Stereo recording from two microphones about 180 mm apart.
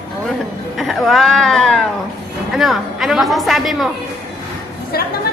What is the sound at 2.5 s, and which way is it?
A woman's voice, centre (ahead or behind).